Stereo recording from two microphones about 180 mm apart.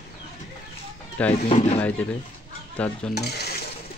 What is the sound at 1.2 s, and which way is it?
Speech, 10° left (ahead or behind).